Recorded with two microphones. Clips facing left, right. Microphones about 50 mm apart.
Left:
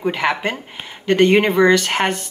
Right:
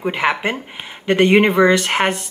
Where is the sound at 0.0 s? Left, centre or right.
Centre.